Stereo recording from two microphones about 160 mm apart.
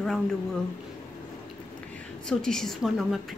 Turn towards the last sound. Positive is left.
turn(degrees=0)  # may be behind; listen again after turning